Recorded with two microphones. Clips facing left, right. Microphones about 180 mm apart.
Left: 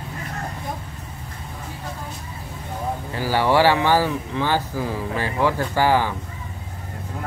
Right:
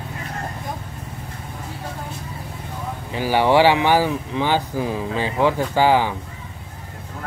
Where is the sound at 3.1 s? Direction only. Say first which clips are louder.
Right 3 dB; 15° right (ahead or behind).